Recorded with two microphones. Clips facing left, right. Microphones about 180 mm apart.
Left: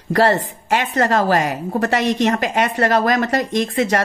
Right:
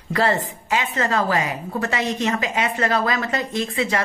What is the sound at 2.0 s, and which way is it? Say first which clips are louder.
A woman's voice: left 5 dB; 80° left.